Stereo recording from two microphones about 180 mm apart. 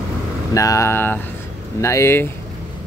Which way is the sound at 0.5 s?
15° left (ahead or behind).